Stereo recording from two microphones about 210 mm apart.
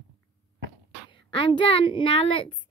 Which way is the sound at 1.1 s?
25° left (ahead or behind).